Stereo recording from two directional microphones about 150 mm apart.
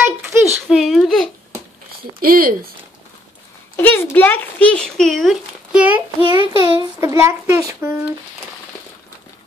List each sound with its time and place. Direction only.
0.0 s a sound: 15° right (ahead or behind)
0.7 s speech: centre (ahead or behind)
2.1 s speech: 75° right (ahead or behind)
3.7 s speech: 15° left (ahead or behind); by 6.0 s 10° right (ahead or behind)
6.2 s child singing: 30° right (ahead or behind)
6.8 s speech: 20° right (ahead or behind)